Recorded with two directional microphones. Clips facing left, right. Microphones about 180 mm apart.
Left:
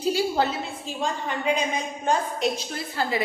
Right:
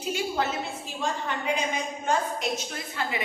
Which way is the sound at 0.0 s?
35° left (ahead or behind).